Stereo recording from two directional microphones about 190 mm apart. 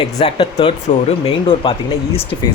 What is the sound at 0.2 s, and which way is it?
Speech, 25° left (ahead or behind).